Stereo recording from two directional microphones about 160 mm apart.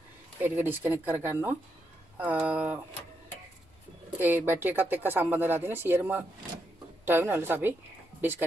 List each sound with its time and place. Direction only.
0.4 s speech: 10° right (ahead or behind)
4.5 s speech: 10° right (ahead or behind)